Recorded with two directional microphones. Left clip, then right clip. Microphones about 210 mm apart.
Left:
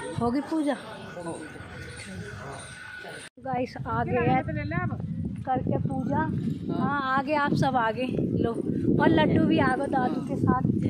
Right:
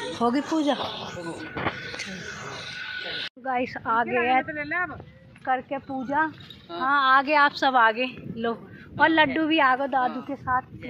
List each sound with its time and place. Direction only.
0.2 s speech: centre (ahead or behind)
3.4 s speech: centre (ahead or behind)
5.5 s speech: 15° right (ahead or behind)